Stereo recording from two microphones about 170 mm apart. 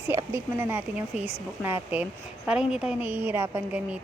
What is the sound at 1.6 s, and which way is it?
A woman's voice, 10° right (ahead or behind).